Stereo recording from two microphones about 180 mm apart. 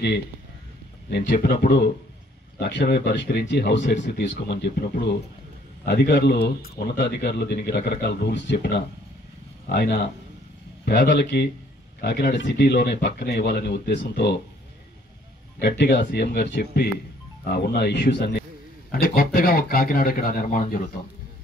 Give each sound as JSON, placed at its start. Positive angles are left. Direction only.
{"t": 1.1, "sound": "speech", "side_deg": 65}
{"t": 2.6, "sound": "speech", "side_deg": 70}
{"t": 15.6, "sound": "speech", "side_deg": 65}
{"t": 18.9, "sound": "speech", "side_deg": 55}